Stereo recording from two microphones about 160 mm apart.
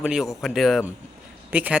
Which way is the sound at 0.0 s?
5° right (ahead or behind).